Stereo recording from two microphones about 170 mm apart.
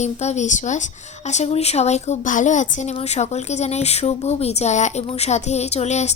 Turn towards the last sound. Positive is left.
turn(degrees=40)  # may be behind; listen again after turning